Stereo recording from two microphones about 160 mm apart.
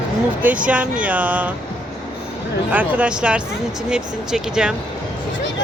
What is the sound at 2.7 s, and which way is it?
Speech, 10° right (ahead or behind).